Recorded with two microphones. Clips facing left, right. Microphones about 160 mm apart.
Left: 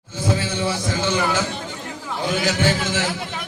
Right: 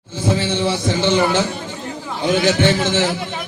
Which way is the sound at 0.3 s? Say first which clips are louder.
Right 4 dB; 25° right (ahead or behind).